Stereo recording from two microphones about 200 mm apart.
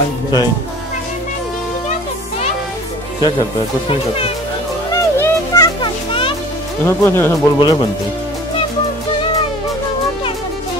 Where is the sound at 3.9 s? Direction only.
30° left (ahead or behind).